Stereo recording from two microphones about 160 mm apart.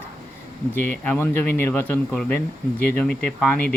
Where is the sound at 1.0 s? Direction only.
10° left (ahead or behind).